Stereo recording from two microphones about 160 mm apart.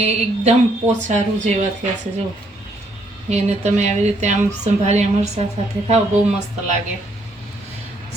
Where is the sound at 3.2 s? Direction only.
45° right (ahead or behind).